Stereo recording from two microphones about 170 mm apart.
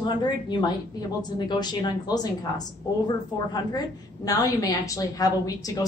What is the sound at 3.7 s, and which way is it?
A woman's voice, 20° left (ahead or behind).